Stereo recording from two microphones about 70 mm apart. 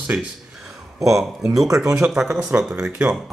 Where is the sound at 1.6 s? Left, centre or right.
Right.